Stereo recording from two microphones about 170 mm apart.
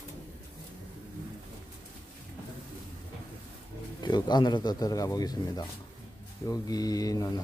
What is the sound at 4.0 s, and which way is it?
Speech, 25° left (ahead or behind).